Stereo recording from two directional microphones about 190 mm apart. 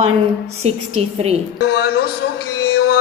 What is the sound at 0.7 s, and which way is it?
Speech, 30° right (ahead or behind).